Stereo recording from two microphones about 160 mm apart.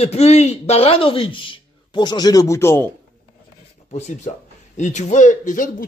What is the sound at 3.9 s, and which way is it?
Speech, 45° left (ahead or behind).